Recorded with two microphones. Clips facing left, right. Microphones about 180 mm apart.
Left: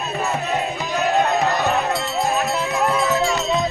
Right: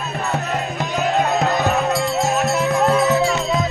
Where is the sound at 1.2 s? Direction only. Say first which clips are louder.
Right 2 dB; 5° right (ahead or behind).